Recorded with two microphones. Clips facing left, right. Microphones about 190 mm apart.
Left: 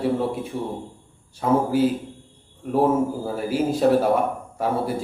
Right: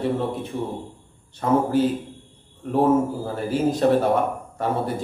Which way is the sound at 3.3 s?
10° left (ahead or behind).